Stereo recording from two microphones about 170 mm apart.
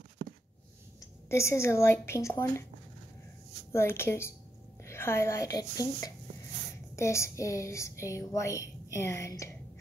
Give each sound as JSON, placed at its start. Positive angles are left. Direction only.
{"t": 1.3, "sound": "speech", "side_deg": 15}
{"t": 3.7, "sound": "speech", "side_deg": 15}